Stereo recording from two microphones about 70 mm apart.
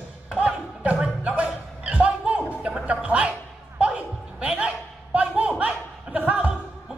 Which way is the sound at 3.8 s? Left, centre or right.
Centre.